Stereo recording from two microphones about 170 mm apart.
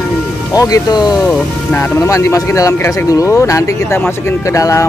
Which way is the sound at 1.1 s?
5° left (ahead or behind).